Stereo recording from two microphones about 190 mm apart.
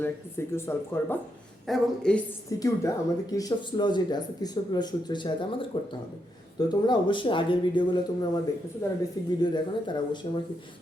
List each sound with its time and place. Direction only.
0.0 s speech: 10° left (ahead or behind)
2.5 s speech: 15° left (ahead or behind)